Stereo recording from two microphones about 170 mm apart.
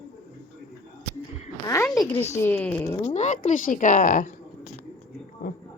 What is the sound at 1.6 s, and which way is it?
Speech, 15° left (ahead or behind).